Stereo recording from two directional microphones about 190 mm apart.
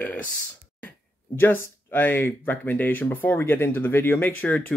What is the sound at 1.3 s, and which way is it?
Speech, 10° left (ahead or behind).